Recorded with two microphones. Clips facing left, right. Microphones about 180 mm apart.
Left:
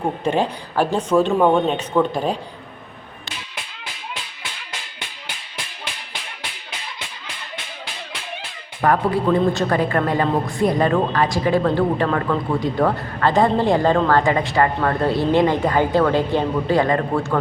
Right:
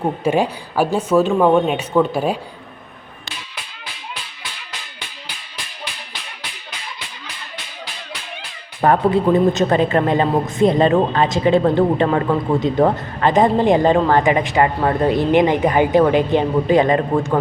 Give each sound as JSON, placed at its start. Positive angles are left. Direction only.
{"t": 0.0, "sound": "speech", "side_deg": -5}
{"t": 8.8, "sound": "a woman's voice", "side_deg": -25}